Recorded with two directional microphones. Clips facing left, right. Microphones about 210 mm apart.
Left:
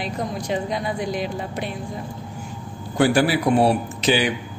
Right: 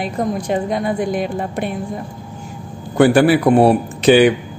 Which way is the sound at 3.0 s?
55° right (ahead or behind).